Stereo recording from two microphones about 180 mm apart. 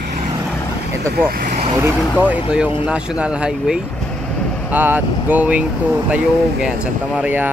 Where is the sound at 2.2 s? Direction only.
5° right (ahead or behind).